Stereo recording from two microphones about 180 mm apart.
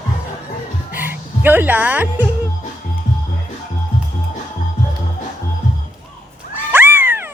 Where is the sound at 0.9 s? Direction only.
10° right (ahead or behind).